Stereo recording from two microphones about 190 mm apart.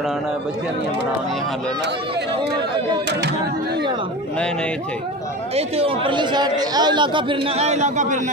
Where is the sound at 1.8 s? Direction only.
65° right (ahead or behind).